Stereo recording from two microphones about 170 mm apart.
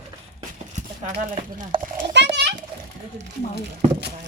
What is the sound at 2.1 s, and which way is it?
Speech, 90° right.